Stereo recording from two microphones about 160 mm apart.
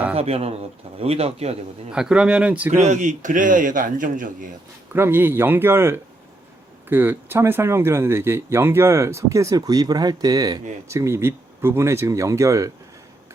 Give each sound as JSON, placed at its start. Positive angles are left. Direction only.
{"t": 0.2, "sound": "speech", "side_deg": -40}
{"t": 1.9, "sound": "speech", "side_deg": -5}
{"t": 2.7, "sound": "a man's voice", "side_deg": -50}
{"t": 4.9, "sound": "speech", "side_deg": -15}